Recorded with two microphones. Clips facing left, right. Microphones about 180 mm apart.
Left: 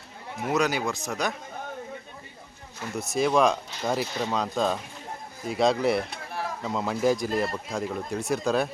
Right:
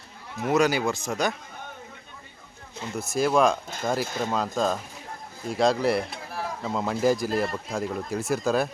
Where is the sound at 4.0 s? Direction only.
50° right (ahead or behind).